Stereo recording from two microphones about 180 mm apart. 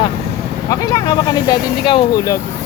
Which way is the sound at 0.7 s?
20° left (ahead or behind).